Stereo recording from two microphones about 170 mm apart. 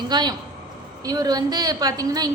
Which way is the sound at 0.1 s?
25° right (ahead or behind).